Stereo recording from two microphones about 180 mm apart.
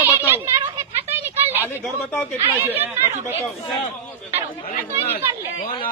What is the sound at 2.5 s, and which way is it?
Speech, 10° right (ahead or behind).